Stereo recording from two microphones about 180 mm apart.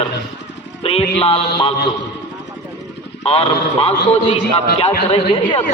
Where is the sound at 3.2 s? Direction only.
35° left (ahead or behind).